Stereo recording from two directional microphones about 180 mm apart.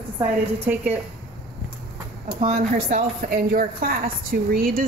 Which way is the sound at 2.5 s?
50° right (ahead or behind).